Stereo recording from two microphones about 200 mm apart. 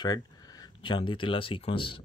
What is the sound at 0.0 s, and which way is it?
Speech, 20° left (ahead or behind).